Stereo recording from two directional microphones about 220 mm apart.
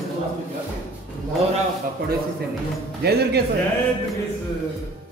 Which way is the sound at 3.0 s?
45° right (ahead or behind).